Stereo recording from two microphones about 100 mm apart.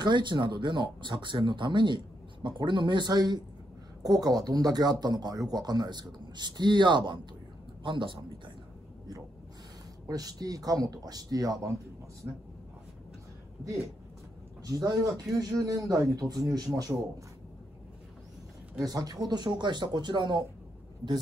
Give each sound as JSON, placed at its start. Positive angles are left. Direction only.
{"t": 0.0, "sound": "a man's voice", "side_deg": -50}
{"t": 10.0, "sound": "speech", "side_deg": -40}
{"t": 12.2, "sound": "speech", "side_deg": -20}
{"t": 14.6, "sound": "speech", "side_deg": -35}
{"t": 18.9, "sound": "speech", "side_deg": -40}